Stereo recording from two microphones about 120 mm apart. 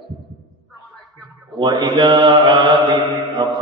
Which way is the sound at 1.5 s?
40° right (ahead or behind).